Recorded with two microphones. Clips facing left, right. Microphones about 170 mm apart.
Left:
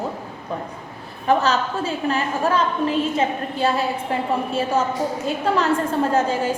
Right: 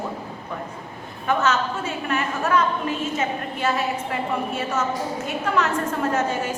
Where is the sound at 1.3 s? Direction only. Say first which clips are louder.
Left 3 dB; 35° left (ahead or behind).